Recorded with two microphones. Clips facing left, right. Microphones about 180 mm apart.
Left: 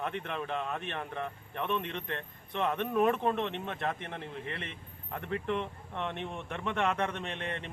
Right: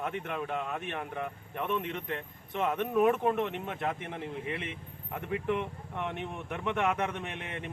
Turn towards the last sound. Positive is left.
turn(degrees=-10)  # may be behind; listen again after turning